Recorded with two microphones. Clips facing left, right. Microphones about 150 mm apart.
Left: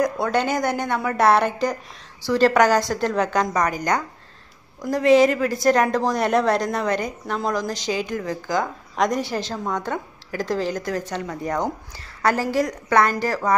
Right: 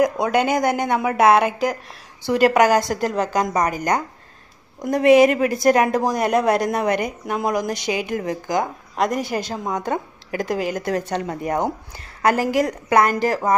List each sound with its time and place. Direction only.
0.0 s a woman's voice: 15° right (ahead or behind)
4.8 s a woman's voice: 20° right (ahead or behind)
8.9 s a woman's voice: 5° right (ahead or behind)
10.8 s a woman's voice: 65° right (ahead or behind)
11.1 s a woman's voice: 20° right (ahead or behind)